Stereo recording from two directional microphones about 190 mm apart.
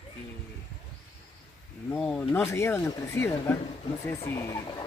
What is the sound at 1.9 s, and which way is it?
Speech, 5° left (ahead or behind).